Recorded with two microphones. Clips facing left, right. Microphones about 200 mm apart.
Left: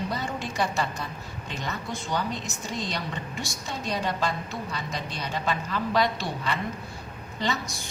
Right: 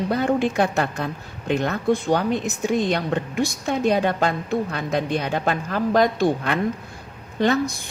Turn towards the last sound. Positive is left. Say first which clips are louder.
# right 10 dB
turn(degrees=-55)  # may be behind; listen again after turning